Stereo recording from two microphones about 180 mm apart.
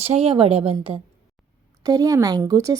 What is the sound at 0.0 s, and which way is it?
A woman's voice, 35° right (ahead or behind).